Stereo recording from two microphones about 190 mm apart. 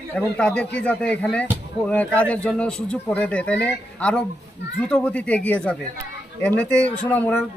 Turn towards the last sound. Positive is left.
turn(degrees=10)  # may be behind; listen again after turning